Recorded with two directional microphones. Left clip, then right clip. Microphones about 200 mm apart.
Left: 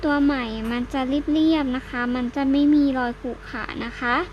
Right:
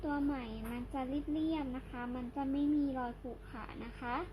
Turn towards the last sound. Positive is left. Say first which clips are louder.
# left 17 dB
turn(degrees=30)  # may be behind; listen again after turning